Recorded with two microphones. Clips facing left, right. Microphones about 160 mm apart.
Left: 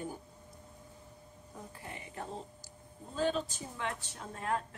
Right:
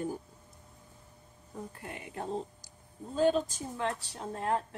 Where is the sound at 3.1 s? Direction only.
45° right (ahead or behind).